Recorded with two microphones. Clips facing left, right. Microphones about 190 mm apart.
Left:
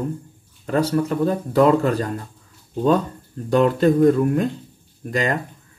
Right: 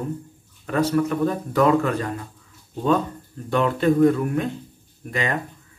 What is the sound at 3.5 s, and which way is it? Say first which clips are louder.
Speech: left 3 dB; 40° left (ahead or behind).